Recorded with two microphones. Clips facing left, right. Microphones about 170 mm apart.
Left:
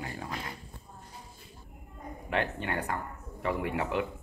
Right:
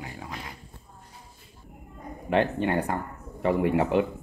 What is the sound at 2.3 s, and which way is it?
Speech, 30° right (ahead or behind).